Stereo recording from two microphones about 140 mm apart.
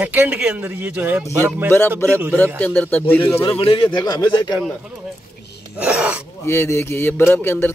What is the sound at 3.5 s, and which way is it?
Speech, 40° left (ahead or behind).